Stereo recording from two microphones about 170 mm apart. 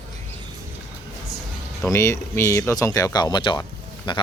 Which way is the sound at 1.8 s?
15° left (ahead or behind).